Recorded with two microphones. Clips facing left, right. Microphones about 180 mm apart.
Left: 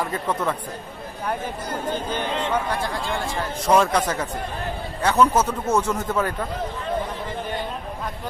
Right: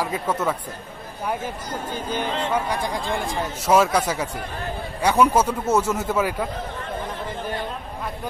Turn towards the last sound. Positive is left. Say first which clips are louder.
# right 1 dB
turn(degrees=-10)  # may be behind; listen again after turning